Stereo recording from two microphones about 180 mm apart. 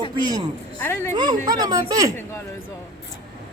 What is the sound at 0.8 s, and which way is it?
Speech, 10° left (ahead or behind).